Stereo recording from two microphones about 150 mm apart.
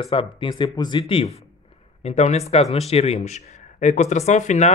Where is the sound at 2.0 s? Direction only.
45° left (ahead or behind).